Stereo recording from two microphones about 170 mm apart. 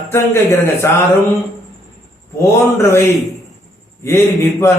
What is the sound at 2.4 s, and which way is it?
Speech, 15° left (ahead or behind).